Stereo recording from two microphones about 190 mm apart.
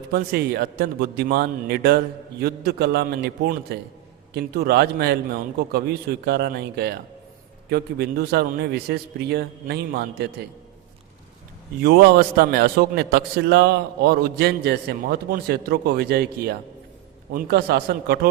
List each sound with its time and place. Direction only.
0.1 s a man's voice: 55° right (ahead or behind)
11.8 s a man's voice: 55° right (ahead or behind)